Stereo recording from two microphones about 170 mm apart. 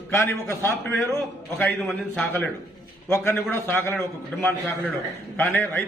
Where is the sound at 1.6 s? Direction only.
Centre (ahead or behind).